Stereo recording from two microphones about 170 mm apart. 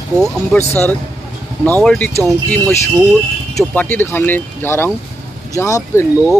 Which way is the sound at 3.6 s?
10° left (ahead or behind).